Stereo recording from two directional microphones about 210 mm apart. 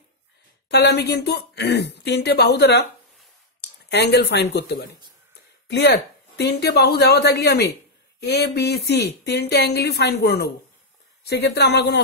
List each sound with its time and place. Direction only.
0.7 s a woman's voice: 50° left (ahead or behind)
3.9 s a woman's voice: 55° left (ahead or behind)